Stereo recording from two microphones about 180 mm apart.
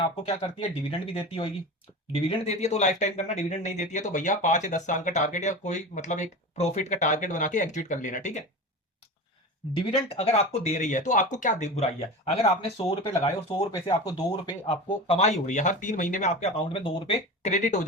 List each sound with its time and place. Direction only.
0.0 s speech: 30° left (ahead or behind)
9.7 s speech: 35° left (ahead or behind)